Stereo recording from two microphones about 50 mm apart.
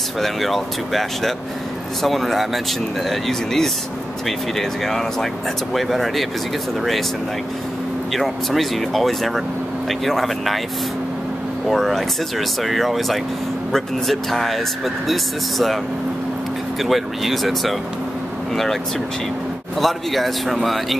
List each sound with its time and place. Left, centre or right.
0.2 s speech: centre
8.1 s speech: centre
11.7 s speech: centre
16.8 s speech: centre
19.8 s speech: centre